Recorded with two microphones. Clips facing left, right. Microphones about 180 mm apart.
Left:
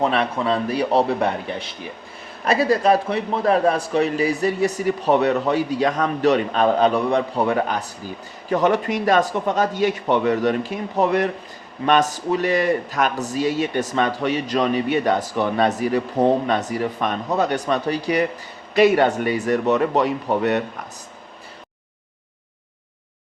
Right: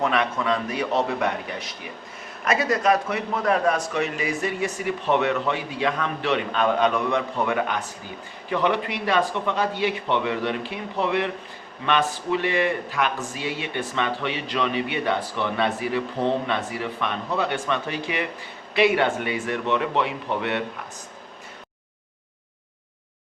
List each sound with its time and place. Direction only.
0.0 s speech: 35° left (ahead or behind)